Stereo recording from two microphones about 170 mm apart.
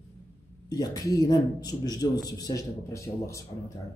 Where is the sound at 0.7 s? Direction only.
20° left (ahead or behind).